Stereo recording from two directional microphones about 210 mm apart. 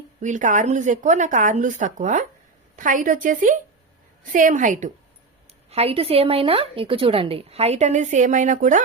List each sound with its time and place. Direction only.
0.2 s speech: 35° right (ahead or behind)